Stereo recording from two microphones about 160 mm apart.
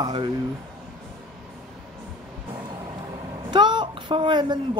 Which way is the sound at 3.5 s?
30° right (ahead or behind).